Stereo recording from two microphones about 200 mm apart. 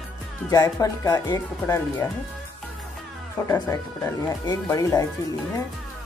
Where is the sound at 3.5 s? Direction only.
15° left (ahead or behind).